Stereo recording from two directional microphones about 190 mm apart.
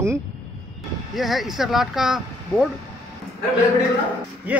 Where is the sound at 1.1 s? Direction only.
Centre (ahead or behind).